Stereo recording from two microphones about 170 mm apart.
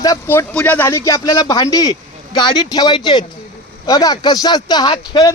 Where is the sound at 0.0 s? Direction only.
15° left (ahead or behind).